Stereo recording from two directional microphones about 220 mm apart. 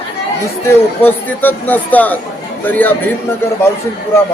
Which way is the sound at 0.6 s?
10° left (ahead or behind).